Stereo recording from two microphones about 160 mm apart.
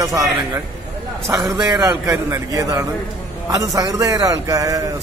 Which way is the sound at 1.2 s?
20° right (ahead or behind).